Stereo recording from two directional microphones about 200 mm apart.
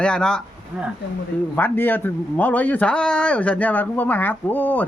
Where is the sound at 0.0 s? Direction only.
5° left (ahead or behind).